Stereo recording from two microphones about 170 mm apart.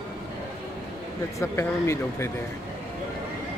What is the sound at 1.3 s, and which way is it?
Speech, 15° left (ahead or behind).